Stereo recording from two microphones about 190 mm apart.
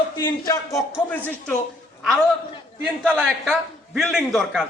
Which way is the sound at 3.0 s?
5° right (ahead or behind).